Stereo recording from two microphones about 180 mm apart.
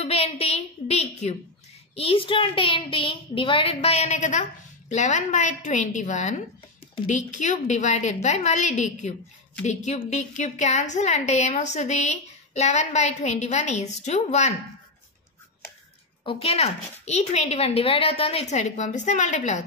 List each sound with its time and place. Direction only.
0.0 s a woman's voice: 35° left (ahead or behind)
16.3 s a woman's voice: 35° left (ahead or behind)